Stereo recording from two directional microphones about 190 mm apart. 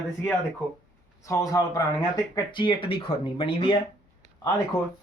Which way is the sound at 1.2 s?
15° left (ahead or behind).